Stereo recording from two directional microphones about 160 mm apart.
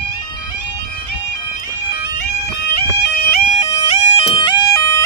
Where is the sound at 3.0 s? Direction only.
80° left.